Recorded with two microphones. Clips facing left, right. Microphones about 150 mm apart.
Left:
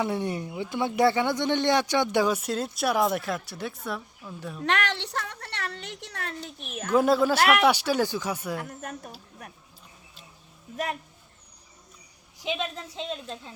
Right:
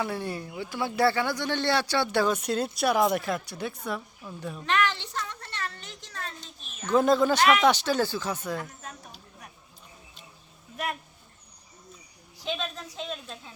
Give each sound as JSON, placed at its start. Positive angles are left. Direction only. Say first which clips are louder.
{"t": 0.0, "sound": "speech", "louder": "left 3 dB", "side_deg": 20}
{"t": 4.6, "sound": "a woman's voice", "louder": "right 1 dB", "side_deg": 70}
{"t": 6.9, "sound": "speech", "louder": "even", "side_deg": 5}
{"t": 8.6, "sound": "speech", "louder": "left 5 dB", "side_deg": 60}
{"t": 12.4, "sound": "speech", "louder": "left 2 dB", "side_deg": 20}